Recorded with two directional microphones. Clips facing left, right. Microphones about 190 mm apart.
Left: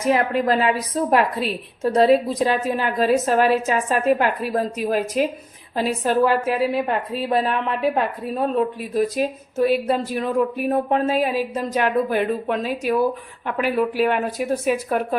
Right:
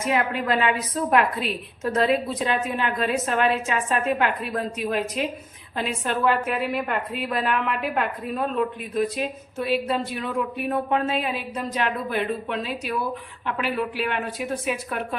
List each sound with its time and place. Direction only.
0.0 s a woman's voice: 40° left (ahead or behind)
9.0 s a woman's voice: 40° left (ahead or behind)